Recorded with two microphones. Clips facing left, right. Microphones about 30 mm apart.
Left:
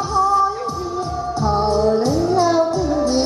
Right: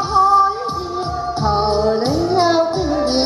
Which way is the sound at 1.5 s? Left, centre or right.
Right.